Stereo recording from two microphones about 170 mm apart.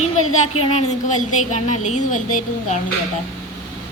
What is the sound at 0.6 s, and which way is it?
Speech, 45° left (ahead or behind).